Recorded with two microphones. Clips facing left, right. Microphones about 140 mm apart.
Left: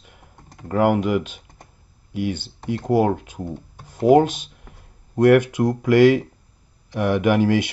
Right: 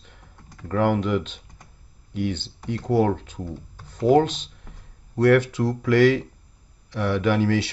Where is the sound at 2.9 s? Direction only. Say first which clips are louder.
Left 2 dB; 10° left (ahead or behind).